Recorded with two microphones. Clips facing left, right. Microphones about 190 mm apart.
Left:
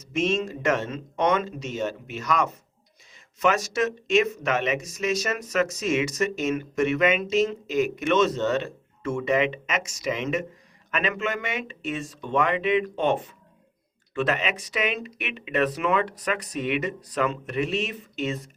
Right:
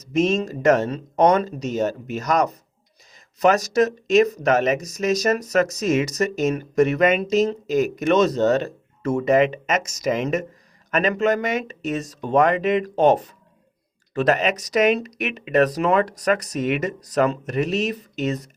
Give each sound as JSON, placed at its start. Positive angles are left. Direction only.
{"t": 0.0, "sound": "speech", "side_deg": -40}